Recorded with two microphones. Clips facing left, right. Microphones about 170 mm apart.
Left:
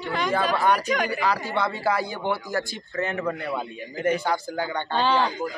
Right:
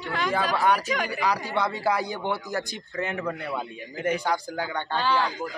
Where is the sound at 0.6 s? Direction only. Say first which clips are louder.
Left 2 dB; 5° right (ahead or behind).